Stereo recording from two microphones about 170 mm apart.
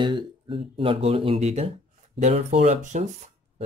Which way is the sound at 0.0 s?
30° right (ahead or behind).